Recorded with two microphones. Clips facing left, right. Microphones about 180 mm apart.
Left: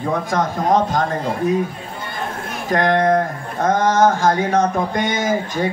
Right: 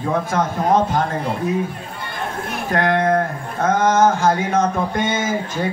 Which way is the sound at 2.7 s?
15° left (ahead or behind).